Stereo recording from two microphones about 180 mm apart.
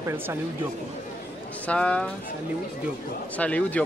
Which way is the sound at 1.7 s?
5° left (ahead or behind).